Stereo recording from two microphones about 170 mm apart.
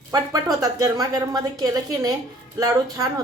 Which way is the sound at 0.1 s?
20° right (ahead or behind).